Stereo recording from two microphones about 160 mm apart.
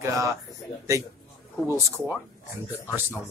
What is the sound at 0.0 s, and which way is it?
Speech, 20° right (ahead or behind).